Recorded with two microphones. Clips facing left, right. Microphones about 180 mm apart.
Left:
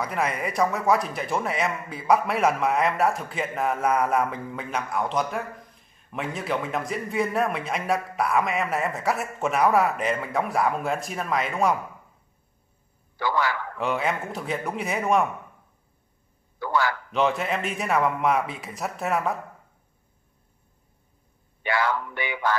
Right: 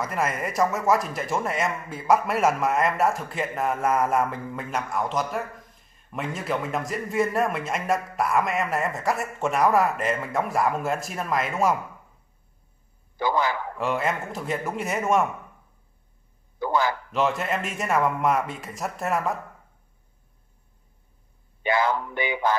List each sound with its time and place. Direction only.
0.0 s a man's voice: centre (ahead or behind)
13.2 s speech: 20° right (ahead or behind)
13.7 s a man's voice: centre (ahead or behind)
16.5 s a man's voice: 20° right (ahead or behind)
17.1 s a man's voice: centre (ahead or behind)
21.6 s speech: 20° right (ahead or behind)